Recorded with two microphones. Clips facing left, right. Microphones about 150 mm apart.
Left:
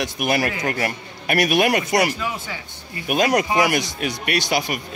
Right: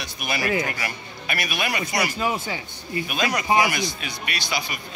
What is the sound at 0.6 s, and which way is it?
Speech, 50° left (ahead or behind).